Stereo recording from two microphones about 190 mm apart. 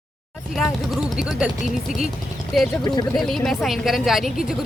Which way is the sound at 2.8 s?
20° left (ahead or behind).